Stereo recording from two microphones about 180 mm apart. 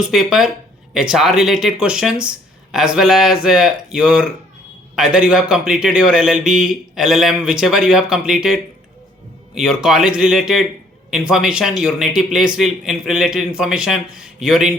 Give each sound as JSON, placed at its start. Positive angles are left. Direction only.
{"t": 0.0, "sound": "a man's voice", "side_deg": -5}